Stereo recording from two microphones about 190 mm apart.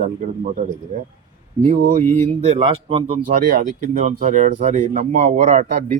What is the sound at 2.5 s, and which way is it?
Speech, 30° right (ahead or behind).